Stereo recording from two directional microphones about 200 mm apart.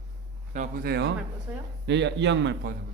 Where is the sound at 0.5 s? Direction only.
45° right (ahead or behind); by 2.7 s 60° right (ahead or behind).